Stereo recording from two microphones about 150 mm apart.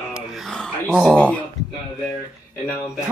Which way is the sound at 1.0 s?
5° left (ahead or behind).